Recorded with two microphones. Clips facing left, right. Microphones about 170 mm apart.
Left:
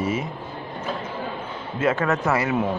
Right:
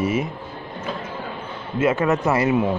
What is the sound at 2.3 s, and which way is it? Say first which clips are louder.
Speech: right 4 dB; 30° right (ahead or behind).